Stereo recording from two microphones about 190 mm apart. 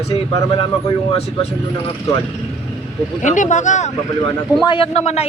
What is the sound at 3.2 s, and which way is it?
Speech, 40° left (ahead or behind).